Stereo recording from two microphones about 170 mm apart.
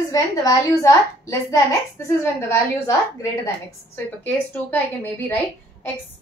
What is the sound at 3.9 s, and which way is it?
A woman's voice, 10° left (ahead or behind).